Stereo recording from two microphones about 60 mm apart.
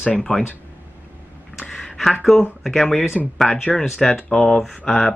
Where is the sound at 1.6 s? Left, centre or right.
Centre.